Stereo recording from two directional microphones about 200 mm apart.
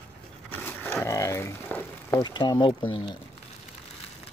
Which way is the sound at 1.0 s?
15° left (ahead or behind).